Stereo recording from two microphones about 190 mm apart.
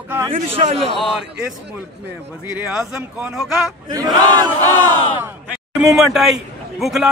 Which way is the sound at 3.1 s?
5° right (ahead or behind).